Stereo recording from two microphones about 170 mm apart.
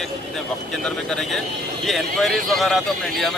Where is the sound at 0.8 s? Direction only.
5° left (ahead or behind).